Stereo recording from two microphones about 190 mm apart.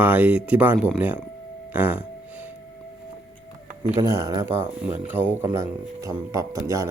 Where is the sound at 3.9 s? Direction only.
15° right (ahead or behind).